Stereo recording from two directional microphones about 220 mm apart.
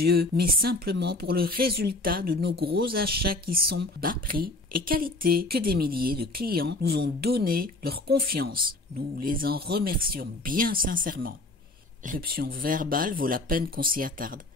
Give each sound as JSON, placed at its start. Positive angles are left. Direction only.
{"t": 0.0, "sound": "speech", "side_deg": -45}